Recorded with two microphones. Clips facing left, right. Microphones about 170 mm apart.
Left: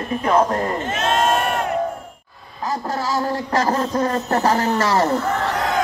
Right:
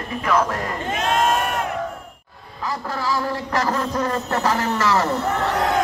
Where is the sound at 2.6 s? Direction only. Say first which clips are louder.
Left 3 dB; 40° left (ahead or behind).